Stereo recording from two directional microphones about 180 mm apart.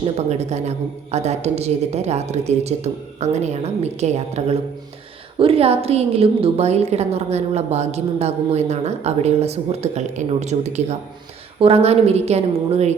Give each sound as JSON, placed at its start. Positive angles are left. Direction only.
{"t": 0.0, "sound": "a woman's voice", "side_deg": -40}